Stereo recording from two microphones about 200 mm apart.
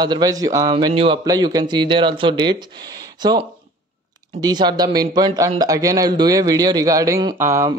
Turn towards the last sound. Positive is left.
turn(degrees=-15)  # may be behind; listen again after turning